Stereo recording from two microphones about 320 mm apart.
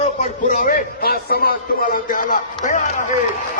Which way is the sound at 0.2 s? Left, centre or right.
Left.